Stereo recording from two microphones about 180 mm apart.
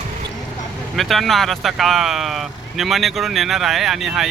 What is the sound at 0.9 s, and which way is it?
Speech, centre (ahead or behind).